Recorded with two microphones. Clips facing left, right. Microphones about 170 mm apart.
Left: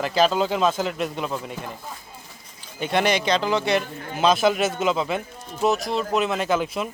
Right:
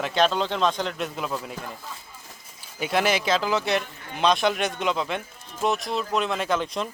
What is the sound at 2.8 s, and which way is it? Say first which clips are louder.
Speech: left 2 dB; 5° right (ahead or behind).